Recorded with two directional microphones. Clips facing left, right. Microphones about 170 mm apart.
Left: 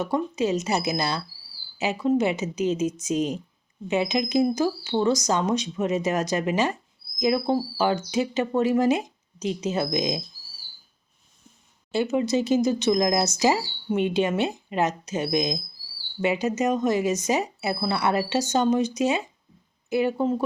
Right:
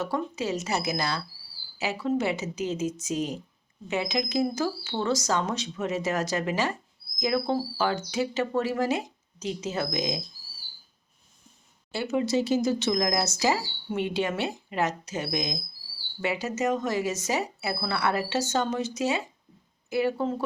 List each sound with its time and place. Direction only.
0.0 s speech: 20° left (ahead or behind)
11.9 s speech: 20° left (ahead or behind)